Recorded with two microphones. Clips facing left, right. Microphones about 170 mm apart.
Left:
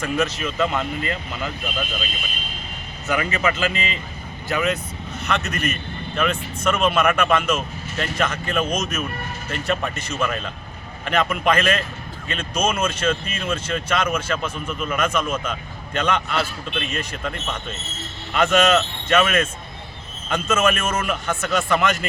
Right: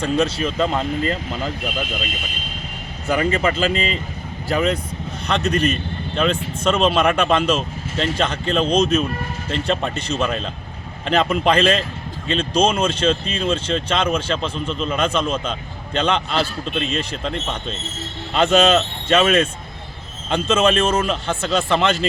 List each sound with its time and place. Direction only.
0.0 s speech: 35° right (ahead or behind)
3.1 s speech: 30° right (ahead or behind)